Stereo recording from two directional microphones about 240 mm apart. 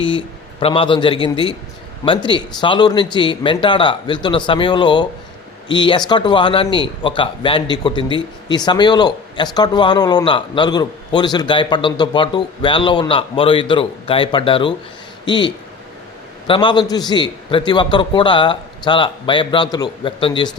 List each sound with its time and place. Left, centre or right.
0.0 s speech: left